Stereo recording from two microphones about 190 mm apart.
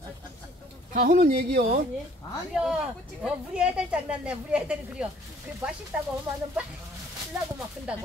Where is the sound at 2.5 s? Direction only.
5° right (ahead or behind).